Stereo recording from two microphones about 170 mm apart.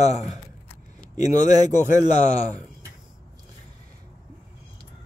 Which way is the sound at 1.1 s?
20° right (ahead or behind).